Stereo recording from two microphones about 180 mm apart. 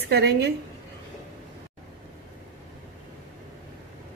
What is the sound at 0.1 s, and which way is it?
Speech, 65° right (ahead or behind).